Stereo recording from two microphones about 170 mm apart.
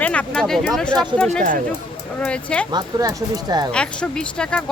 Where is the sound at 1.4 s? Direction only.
50° right (ahead or behind).